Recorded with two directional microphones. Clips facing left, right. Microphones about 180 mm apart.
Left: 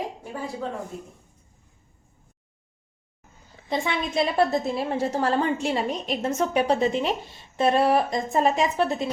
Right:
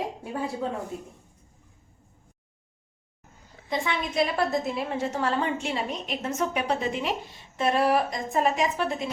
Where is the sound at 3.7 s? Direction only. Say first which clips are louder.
Left 2 dB; 30° left (ahead or behind).